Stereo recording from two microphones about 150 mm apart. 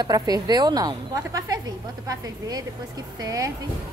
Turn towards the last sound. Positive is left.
turn(degrees=-20)  # may be behind; listen again after turning